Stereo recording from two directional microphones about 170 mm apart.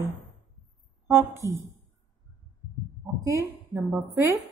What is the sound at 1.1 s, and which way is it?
Speech, 15° right (ahead or behind).